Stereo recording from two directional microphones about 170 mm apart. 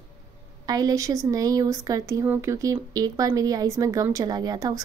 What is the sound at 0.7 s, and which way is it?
Speech, 20° right (ahead or behind).